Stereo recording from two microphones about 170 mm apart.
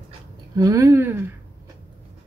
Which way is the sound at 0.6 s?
20° right (ahead or behind).